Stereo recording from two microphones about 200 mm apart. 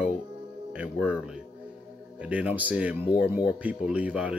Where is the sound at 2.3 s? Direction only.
5° right (ahead or behind).